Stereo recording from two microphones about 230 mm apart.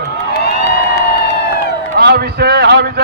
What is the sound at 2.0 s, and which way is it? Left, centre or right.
A man's voice, right.